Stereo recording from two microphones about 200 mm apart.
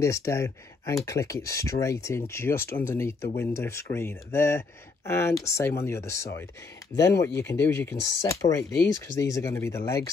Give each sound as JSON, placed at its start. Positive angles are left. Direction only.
{"t": 0.0, "sound": "speech", "side_deg": 15}